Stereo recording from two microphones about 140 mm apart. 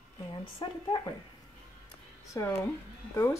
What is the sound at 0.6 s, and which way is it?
Speech, 35° left (ahead or behind).